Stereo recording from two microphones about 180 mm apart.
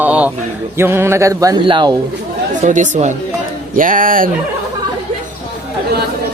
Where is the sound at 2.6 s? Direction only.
45° right (ahead or behind).